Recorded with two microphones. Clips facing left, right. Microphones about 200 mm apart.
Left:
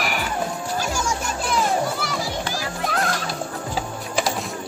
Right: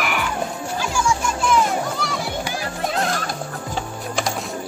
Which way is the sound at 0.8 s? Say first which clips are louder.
Right 7 dB; 40° left (ahead or behind).